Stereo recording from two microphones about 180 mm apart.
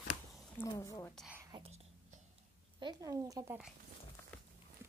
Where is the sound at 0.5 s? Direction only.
15° left (ahead or behind).